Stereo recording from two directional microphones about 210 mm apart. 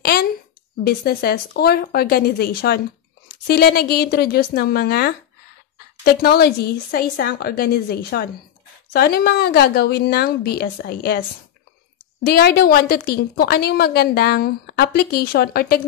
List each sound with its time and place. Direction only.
0.0 s a sound: 45° left (ahead or behind)
0.8 s a woman's voice: 50° left (ahead or behind)
12.3 s a woman's voice: 50° left (ahead or behind)